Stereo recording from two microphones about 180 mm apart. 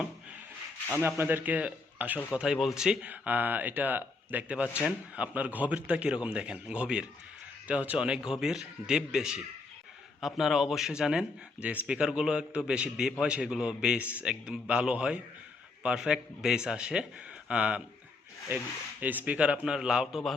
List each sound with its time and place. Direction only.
0.9 s a man's voice: 10° right (ahead or behind)